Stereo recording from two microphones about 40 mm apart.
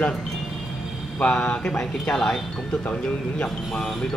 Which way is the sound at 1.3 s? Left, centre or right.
Left.